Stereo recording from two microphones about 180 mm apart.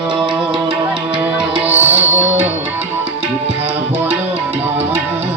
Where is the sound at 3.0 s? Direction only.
35° right (ahead or behind).